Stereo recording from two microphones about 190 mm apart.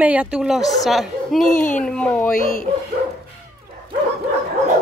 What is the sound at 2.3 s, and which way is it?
Speech, 45° left (ahead or behind).